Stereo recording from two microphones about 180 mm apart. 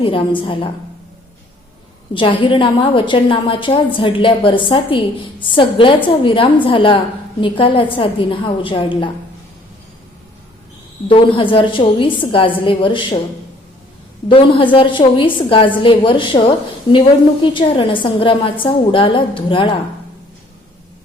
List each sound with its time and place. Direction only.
0.0 s a woman's voice: 30° left (ahead or behind)
2.1 s a woman's voice: 25° left (ahead or behind)
11.1 s a woman's voice: 30° left (ahead or behind)
14.3 s a woman's voice: 25° left (ahead or behind)
17.4 s a woman's voice: 30° left (ahead or behind)